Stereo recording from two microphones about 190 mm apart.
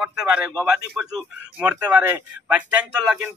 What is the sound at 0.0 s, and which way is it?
Speech, 5° right (ahead or behind).